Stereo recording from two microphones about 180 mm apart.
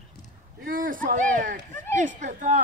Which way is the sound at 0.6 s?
50° right (ahead or behind).